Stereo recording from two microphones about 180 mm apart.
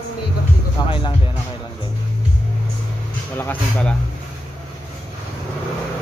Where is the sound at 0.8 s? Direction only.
25° left (ahead or behind).